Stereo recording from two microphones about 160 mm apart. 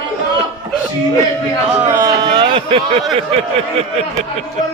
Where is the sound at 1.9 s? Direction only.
25° right (ahead or behind).